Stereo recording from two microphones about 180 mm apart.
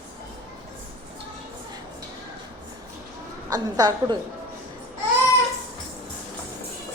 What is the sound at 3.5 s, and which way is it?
Speech, 20° right (ahead or behind).